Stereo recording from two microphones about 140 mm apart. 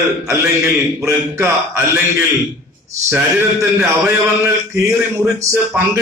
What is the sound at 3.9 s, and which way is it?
A man's voice, 15° right (ahead or behind).